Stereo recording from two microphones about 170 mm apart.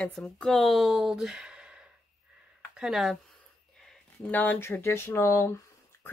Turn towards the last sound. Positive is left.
turn(degrees=15)  # may be behind; listen again after turning